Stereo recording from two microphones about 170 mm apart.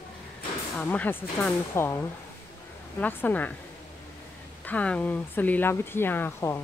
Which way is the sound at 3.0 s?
10° left (ahead or behind).